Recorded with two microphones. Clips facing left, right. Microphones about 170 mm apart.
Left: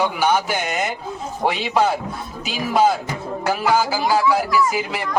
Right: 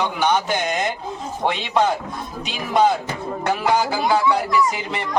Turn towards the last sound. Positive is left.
turn(degrees=5)  # may be behind; listen again after turning